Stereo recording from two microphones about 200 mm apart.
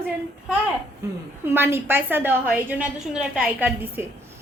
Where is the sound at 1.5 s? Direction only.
10° right (ahead or behind).